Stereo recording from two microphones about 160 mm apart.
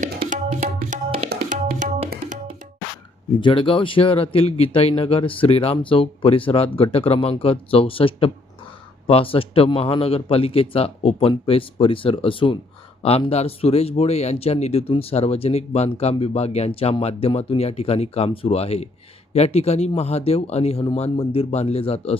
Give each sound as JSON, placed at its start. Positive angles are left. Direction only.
{"t": 0.9, "sound": "tabla", "side_deg": -50}
{"t": 1.5, "sound": "music", "side_deg": -50}
{"t": 3.4, "sound": "a man's voice", "side_deg": 35}